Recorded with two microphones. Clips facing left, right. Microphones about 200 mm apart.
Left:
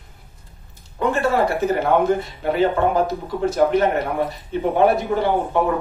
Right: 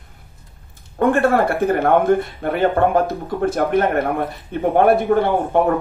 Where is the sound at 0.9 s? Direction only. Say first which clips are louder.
Right 4 dB; 55° right (ahead or behind).